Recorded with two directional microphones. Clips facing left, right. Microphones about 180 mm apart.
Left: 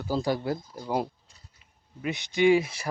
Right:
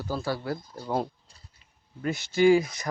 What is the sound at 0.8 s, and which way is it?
Speech, 5° left (ahead or behind).